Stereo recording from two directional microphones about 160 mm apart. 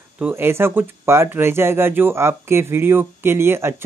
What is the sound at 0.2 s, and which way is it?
Speech, 15° right (ahead or behind).